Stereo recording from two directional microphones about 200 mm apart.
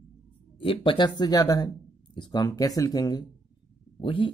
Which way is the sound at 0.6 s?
25° left (ahead or behind).